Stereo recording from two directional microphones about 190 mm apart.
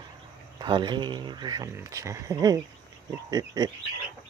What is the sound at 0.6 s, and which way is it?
Speech, 25° right (ahead or behind).